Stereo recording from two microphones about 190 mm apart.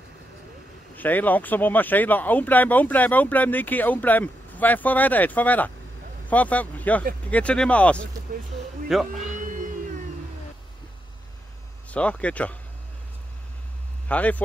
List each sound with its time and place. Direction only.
0.9 s speech: 10° left (ahead or behind)
9.4 s music: 45° right (ahead or behind)
11.9 s speech: 5° left (ahead or behind)
14.0 s speech: 10° left (ahead or behind)